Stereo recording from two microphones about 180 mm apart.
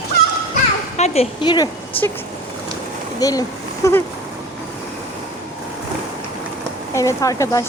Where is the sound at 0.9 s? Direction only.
35° left (ahead or behind).